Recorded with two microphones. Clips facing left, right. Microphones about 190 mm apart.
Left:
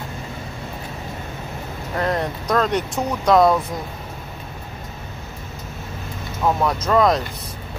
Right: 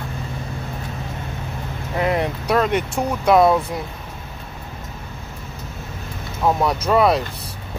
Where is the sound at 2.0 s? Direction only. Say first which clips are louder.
Right 2 dB; 10° right (ahead or behind).